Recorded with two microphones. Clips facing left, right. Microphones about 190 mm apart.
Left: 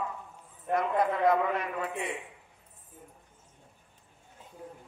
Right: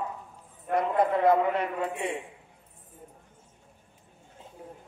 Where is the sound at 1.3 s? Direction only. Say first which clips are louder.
Right 4 dB; 30° right (ahead or behind).